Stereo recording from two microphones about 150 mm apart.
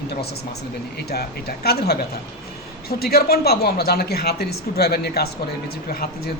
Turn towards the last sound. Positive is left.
turn(degrees=90)